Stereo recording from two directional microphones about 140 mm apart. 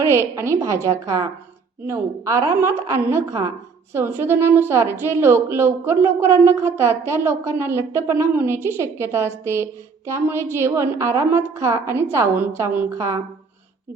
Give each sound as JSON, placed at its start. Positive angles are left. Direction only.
{"t": 0.0, "sound": "a woman's voice", "side_deg": -20}